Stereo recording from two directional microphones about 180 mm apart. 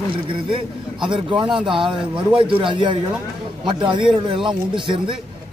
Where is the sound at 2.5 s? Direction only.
25° right (ahead or behind).